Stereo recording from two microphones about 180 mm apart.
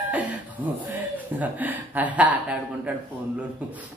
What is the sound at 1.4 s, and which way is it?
Speech, 10° right (ahead or behind).